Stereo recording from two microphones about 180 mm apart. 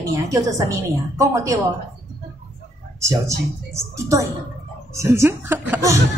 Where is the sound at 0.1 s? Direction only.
15° right (ahead or behind).